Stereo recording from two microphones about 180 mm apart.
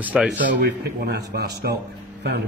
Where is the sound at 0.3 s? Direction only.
75° right (ahead or behind).